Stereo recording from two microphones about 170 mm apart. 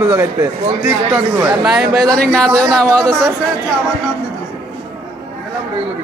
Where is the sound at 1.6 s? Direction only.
Centre (ahead or behind).